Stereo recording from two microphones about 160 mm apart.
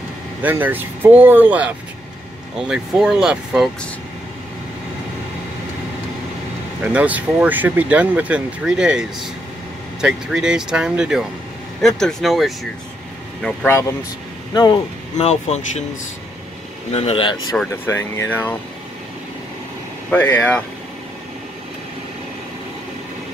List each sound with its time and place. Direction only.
0.4 s speech: 10° right (ahead or behind)
2.7 s speech: 5° right (ahead or behind)
6.8 s speech: 10° right (ahead or behind)
10.0 s speech: 5° right (ahead or behind)
14.5 s speech: 25° left (ahead or behind)
15.1 s speech: 45° left (ahead or behind)
16.9 s speech: 40° left (ahead or behind)
17.8 s speech: 15° left (ahead or behind)
20.1 s speech: 10° left (ahead or behind)